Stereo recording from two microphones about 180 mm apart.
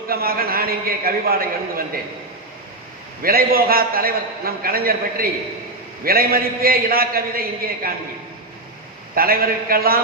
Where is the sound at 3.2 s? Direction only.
55° right (ahead or behind).